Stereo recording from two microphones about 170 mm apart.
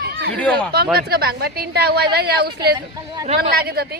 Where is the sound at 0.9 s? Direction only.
65° right (ahead or behind).